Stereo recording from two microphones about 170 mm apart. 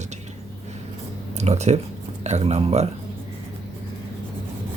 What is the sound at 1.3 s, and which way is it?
Speech, 40° right (ahead or behind).